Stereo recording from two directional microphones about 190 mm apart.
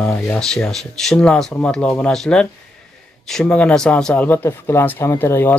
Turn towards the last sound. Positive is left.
turn(degrees=10)  # may be behind; listen again after turning